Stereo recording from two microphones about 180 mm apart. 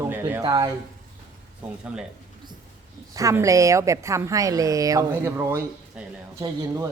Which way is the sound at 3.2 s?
15° right (ahead or behind).